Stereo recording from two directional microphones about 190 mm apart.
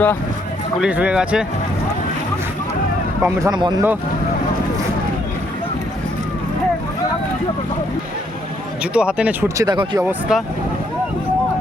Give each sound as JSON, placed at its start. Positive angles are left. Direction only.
{"t": 0.8, "sound": "speech", "side_deg": -5}
{"t": 3.2, "sound": "speech", "side_deg": -20}
{"t": 8.8, "sound": "speech", "side_deg": -5}
{"t": 9.6, "sound": "speech", "side_deg": -25}
{"t": 10.1, "sound": "speech", "side_deg": -5}